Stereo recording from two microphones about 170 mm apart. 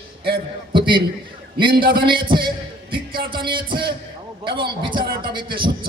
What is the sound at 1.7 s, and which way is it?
Speech, 60° right (ahead or behind).